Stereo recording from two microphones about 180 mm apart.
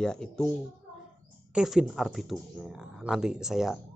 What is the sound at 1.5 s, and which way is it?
Speech, 5° right (ahead or behind).